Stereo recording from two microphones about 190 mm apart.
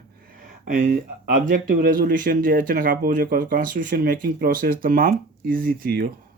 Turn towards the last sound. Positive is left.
turn(degrees=-50)  # may be behind; listen again after turning